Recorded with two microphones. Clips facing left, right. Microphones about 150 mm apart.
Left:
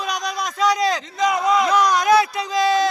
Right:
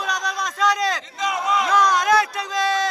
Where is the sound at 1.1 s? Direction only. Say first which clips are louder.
Left 5 dB; 40° left (ahead or behind).